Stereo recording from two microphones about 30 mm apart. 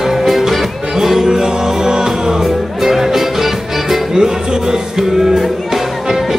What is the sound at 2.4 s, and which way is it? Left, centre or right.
Music, centre.